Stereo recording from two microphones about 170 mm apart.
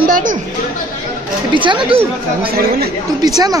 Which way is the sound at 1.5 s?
30° right (ahead or behind).